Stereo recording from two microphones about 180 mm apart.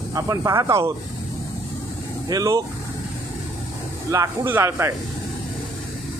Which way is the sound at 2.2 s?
20° right (ahead or behind).